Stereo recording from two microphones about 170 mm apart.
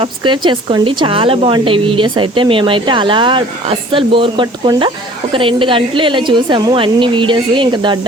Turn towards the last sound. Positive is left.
turn(degrees=-25)  # may be behind; listen again after turning